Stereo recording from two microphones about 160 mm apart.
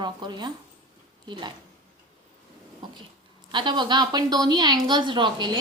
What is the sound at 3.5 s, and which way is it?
A woman's voice, 30° right (ahead or behind).